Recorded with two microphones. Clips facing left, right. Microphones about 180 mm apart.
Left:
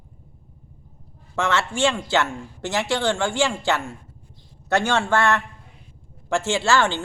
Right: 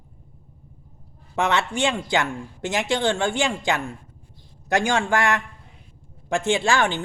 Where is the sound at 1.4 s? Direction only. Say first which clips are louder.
Even; 20° right (ahead or behind).